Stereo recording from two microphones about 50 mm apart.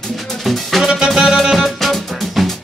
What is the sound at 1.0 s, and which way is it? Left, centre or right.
Music, centre.